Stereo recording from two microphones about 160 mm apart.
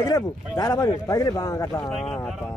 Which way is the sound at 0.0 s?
25° left (ahead or behind).